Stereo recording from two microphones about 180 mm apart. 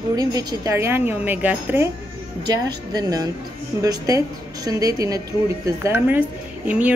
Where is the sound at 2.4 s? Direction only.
20° right (ahead or behind).